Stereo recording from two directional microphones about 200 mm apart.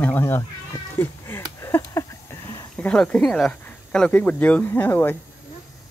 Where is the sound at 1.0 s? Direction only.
10° left (ahead or behind).